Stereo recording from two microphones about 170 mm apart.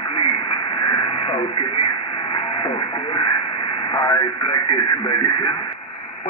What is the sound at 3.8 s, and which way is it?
Speech, 25° left (ahead or behind).